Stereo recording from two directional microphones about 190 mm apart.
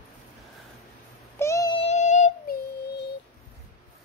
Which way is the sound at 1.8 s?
35° left (ahead or behind).